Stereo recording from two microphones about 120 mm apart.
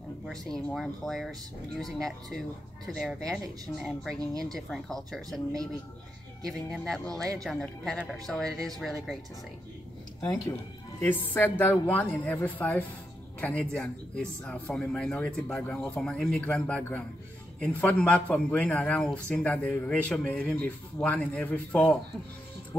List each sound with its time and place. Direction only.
0.7 s speech: centre (ahead or behind)
6.4 s speech: 5° left (ahead or behind)
11.0 s a man's voice: 15° left (ahead or behind)